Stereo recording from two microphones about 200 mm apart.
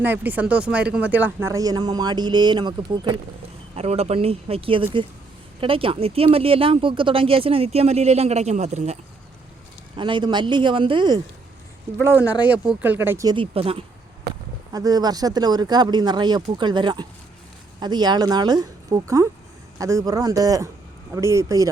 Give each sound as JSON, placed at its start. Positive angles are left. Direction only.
{"t": 0.0, "sound": "speech", "side_deg": -10}
{"t": 9.9, "sound": "speech", "side_deg": -25}
{"t": 12.0, "sound": "speech", "side_deg": -10}
{"t": 14.7, "sound": "speech", "side_deg": -20}